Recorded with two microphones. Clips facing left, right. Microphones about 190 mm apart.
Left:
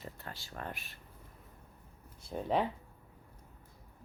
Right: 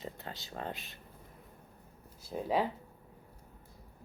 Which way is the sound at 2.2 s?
Centre (ahead or behind).